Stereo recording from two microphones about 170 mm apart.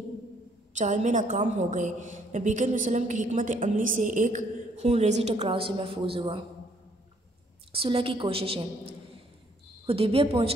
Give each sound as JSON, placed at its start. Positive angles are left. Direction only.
{"t": 0.7, "sound": "a woman's voice", "side_deg": -45}
{"t": 7.7, "sound": "a woman's voice", "side_deg": -30}
{"t": 9.8, "sound": "a woman's voice", "side_deg": -35}